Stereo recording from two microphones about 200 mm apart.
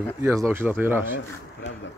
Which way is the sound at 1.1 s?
65° left (ahead or behind).